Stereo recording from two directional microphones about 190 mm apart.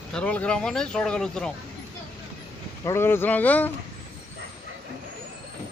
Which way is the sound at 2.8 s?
15° left (ahead or behind).